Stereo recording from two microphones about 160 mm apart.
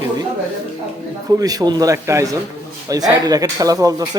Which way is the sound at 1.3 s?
25° right (ahead or behind).